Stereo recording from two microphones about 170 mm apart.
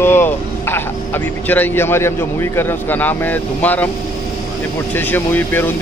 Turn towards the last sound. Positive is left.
turn(degrees=10)  # may be behind; listen again after turning